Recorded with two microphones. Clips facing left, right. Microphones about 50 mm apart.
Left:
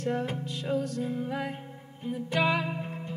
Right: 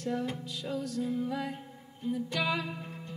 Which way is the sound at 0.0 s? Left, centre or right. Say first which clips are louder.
Left 3 dB; left.